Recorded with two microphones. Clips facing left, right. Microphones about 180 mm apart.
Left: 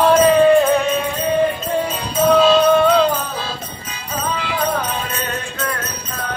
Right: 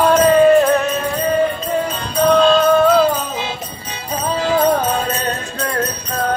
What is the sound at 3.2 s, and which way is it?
Jingle bell, 20° right (ahead or behind).